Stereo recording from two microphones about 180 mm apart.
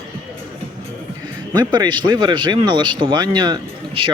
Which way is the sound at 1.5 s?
25° right (ahead or behind).